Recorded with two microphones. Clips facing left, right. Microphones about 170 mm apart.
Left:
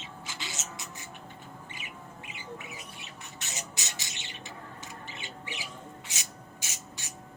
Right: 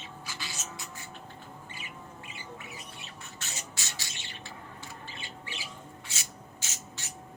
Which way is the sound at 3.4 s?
20° left (ahead or behind).